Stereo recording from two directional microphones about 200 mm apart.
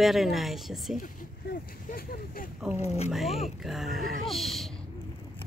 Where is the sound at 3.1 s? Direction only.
Centre (ahead or behind).